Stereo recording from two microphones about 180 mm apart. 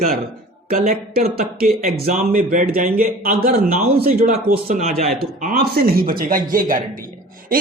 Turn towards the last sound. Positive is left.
turn(degrees=-50)  # may be behind; listen again after turning